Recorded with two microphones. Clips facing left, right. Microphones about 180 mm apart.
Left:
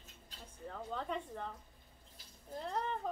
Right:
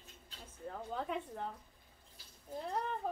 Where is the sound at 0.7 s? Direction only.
5° right (ahead or behind).